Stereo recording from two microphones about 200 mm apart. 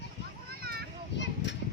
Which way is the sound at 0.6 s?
50° right (ahead or behind).